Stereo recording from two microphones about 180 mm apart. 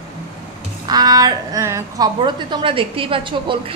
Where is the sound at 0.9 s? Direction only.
20° right (ahead or behind).